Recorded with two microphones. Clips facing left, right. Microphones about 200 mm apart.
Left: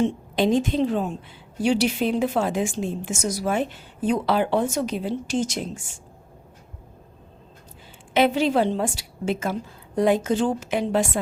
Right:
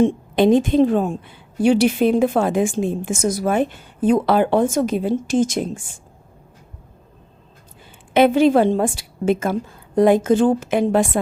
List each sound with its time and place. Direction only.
0.0 s a woman's voice: 55° right (ahead or behind)
8.1 s a woman's voice: 50° right (ahead or behind)